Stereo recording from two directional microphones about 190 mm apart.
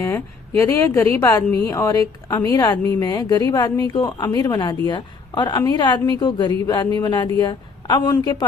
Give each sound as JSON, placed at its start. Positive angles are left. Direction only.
{"t": 0.6, "sound": "a woman's voice", "side_deg": 15}